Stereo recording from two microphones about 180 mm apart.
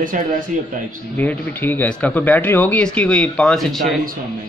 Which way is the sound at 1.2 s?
10° left (ahead or behind).